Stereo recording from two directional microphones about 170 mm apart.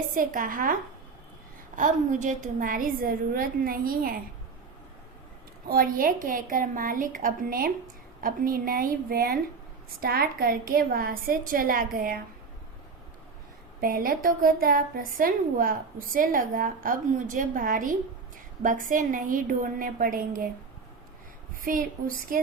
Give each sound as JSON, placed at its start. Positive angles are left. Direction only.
{"t": 0.1, "sound": "a woman's voice", "side_deg": -50}
{"t": 5.6, "sound": "a woman's voice", "side_deg": -55}
{"t": 13.8, "sound": "a woman's voice", "side_deg": -55}
{"t": 21.6, "sound": "a woman's voice", "side_deg": -55}